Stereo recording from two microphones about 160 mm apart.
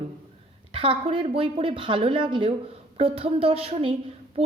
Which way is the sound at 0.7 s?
35° right (ahead or behind).